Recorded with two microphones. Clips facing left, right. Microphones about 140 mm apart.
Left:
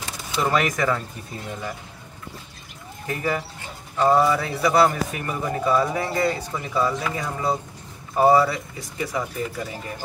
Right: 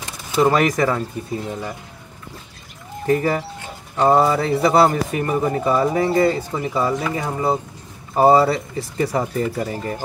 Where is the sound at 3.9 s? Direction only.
25° right (ahead or behind).